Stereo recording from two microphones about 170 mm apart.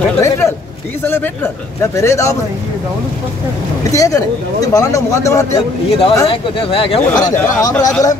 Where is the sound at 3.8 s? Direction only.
20° left (ahead or behind).